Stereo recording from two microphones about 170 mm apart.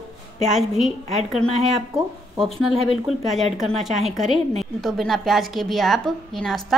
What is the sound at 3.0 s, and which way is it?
Speech, centre (ahead or behind).